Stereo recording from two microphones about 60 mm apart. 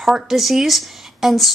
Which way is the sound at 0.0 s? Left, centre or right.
Centre.